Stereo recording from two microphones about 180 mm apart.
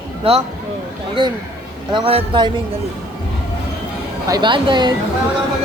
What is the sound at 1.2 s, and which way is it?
Speech, 25° right (ahead or behind).